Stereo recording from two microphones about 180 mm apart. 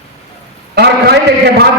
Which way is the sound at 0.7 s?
65° right (ahead or behind).